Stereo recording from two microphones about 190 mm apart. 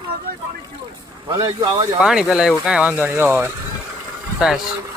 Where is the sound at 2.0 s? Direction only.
5° right (ahead or behind).